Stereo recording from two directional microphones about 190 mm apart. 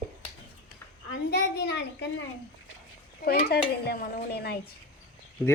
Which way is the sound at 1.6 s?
65° left (ahead or behind).